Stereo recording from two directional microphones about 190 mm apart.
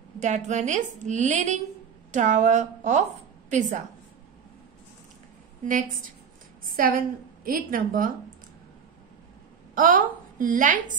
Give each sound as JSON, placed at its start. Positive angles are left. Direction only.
{"t": 0.2, "sound": "a woman's voice", "side_deg": -40}
{"t": 5.7, "sound": "a woman's voice", "side_deg": -45}
{"t": 9.8, "sound": "a woman's voice", "side_deg": -45}